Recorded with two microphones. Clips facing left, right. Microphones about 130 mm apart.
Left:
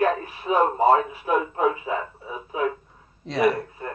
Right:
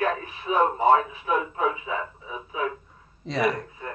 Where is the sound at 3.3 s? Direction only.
Centre (ahead or behind).